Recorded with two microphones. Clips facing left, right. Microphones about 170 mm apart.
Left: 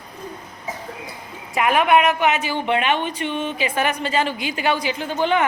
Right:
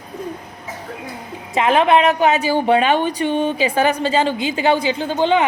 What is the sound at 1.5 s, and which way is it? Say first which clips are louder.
A woman's voice: right 3 dB; 25° right (ahead or behind).